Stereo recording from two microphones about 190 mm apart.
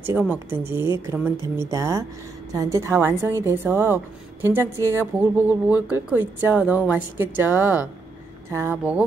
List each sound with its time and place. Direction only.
0.0 s a woman's voice: 10° right (ahead or behind)